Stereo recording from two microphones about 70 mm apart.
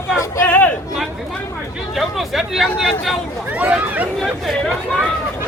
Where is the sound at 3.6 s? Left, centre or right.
Right.